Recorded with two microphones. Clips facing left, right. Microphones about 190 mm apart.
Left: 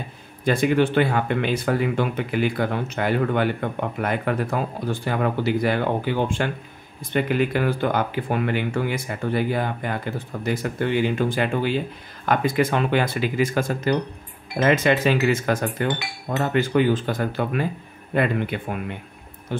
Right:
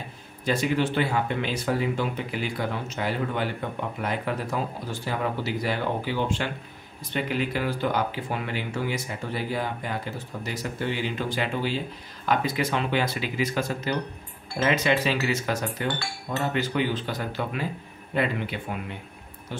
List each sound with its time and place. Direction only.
0.5 s speech: 55° left (ahead or behind)
15.9 s speech: 20° left (ahead or behind)
16.5 s speech: 50° left (ahead or behind)